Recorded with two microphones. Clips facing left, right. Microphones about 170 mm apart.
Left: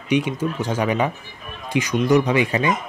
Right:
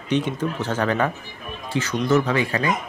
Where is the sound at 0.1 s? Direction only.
10° left (ahead or behind).